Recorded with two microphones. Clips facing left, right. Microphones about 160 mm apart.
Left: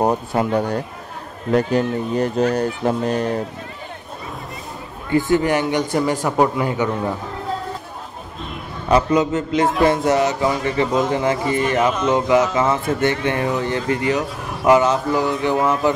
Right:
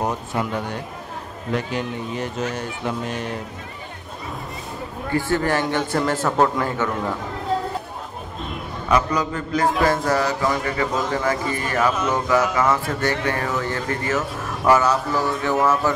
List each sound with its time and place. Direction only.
0.0 s speech: 35° left (ahead or behind)
5.1 s a man's voice: 15° left (ahead or behind)
8.9 s speech: 25° left (ahead or behind)